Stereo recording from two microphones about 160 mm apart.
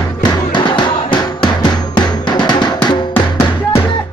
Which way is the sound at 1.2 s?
25° left (ahead or behind).